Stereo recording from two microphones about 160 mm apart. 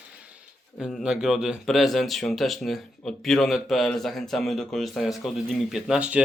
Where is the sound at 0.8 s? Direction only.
5° right (ahead or behind).